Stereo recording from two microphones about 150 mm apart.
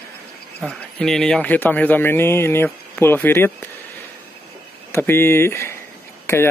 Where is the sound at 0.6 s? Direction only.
5° left (ahead or behind).